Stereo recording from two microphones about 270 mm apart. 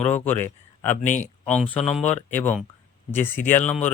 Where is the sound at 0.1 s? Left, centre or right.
Centre.